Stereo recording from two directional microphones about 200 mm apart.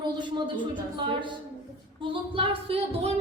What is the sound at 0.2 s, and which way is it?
Speech, 25° right (ahead or behind).